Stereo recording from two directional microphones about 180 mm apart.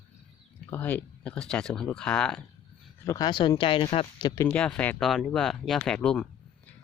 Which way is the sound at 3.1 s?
20° left (ahead or behind).